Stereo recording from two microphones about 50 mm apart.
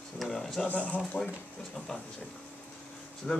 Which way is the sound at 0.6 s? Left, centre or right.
Left.